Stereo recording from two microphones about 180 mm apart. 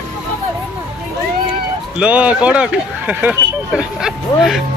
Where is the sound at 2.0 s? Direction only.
5° right (ahead or behind).